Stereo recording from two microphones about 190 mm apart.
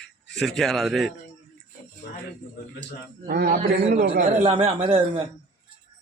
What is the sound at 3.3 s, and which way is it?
Speech, 50° right (ahead or behind).